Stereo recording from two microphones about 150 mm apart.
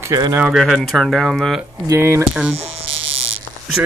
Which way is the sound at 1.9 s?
15° right (ahead or behind).